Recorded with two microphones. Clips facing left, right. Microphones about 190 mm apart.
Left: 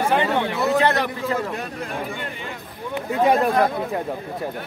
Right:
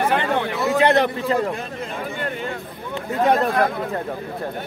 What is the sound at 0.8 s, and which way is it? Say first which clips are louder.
Speech: right 4 dB; 20° right (ahead or behind).